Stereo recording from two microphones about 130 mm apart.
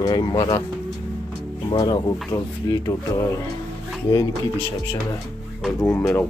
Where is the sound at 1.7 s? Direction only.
30° left (ahead or behind).